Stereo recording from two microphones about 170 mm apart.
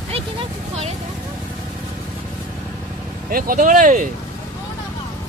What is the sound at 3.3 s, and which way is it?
Speech, 55° right (ahead or behind).